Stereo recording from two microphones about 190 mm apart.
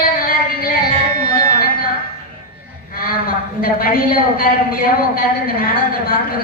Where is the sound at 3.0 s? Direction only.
50° left (ahead or behind).